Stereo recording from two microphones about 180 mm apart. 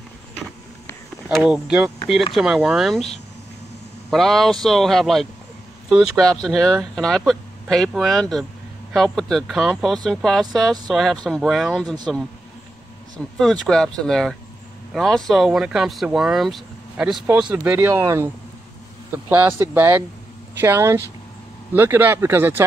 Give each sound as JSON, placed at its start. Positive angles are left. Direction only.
{"t": 1.3, "sound": "speech", "side_deg": -5}
{"t": 4.1, "sound": "speech", "side_deg": 0}
{"t": 13.2, "sound": "speech", "side_deg": 0}